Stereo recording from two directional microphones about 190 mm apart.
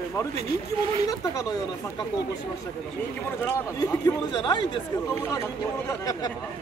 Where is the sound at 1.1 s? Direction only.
15° left (ahead or behind).